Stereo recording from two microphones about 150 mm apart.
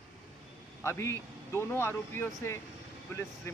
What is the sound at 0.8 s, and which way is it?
Speech, 20° left (ahead or behind).